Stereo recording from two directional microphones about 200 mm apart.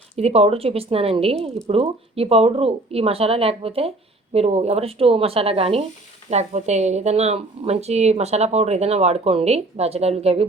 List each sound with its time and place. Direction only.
0.2 s a woman's voice: 30° right (ahead or behind)